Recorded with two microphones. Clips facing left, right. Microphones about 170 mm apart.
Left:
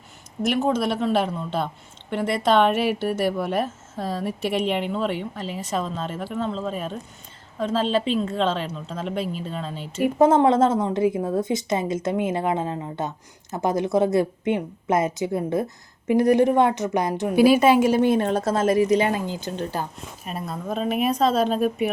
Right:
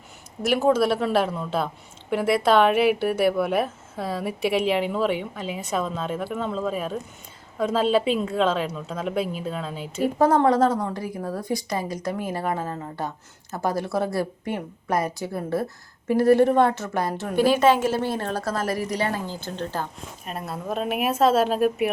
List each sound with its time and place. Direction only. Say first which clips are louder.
0.4 s a woman's voice: right 2 dB; 5° right (ahead or behind)
10.0 s a woman's voice: left 2 dB; 20° left (ahead or behind)
20.2 s a woman's voice: left 1 dB; centre (ahead or behind)